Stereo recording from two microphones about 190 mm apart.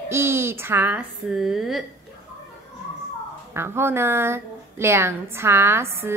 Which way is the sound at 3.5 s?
15° right (ahead or behind).